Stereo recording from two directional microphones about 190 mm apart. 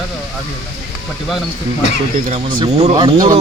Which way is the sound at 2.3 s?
30° right (ahead or behind).